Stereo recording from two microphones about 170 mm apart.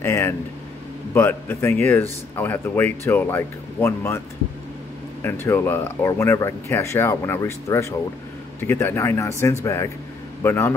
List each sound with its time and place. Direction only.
0.0 s speech: 15° left (ahead or behind)
5.2 s speech: 15° left (ahead or behind)